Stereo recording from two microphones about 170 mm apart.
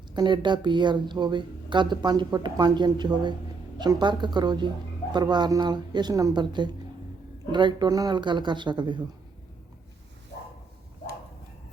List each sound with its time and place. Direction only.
0.1 s a woman's voice: 25° right (ahead or behind)